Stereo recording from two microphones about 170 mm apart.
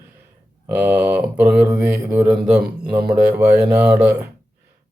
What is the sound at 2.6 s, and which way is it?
Speech, 70° right (ahead or behind).